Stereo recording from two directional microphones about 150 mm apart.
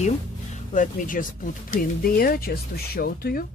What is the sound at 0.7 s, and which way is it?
Speech, 60° left (ahead or behind).